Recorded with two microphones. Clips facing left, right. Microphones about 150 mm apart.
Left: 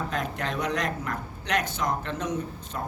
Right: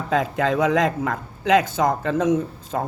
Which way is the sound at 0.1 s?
90° right.